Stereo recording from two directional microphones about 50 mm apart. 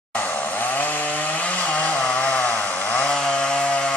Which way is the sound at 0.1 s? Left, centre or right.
Left.